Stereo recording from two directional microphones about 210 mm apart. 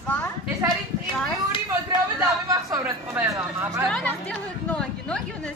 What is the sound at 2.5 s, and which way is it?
Speech, 15° right (ahead or behind).